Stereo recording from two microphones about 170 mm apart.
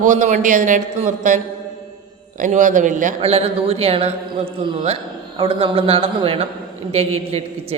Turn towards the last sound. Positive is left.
turn(degrees=-35)  # may be behind; listen again after turning